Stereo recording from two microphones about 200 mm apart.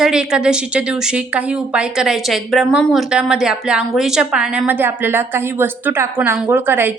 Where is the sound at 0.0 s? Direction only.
5° right (ahead or behind).